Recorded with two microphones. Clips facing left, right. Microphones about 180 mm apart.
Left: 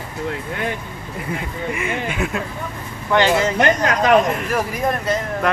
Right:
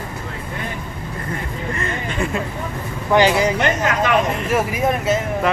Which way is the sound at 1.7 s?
10° left (ahead or behind).